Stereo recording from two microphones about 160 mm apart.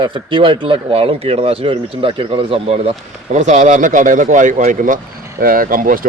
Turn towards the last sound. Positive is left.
turn(degrees=-60)  # may be behind; listen again after turning